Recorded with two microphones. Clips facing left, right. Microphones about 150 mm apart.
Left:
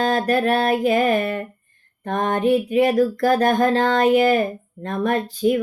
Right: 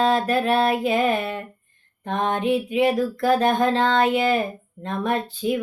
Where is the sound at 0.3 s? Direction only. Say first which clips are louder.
Left 2 dB; 40° left (ahead or behind).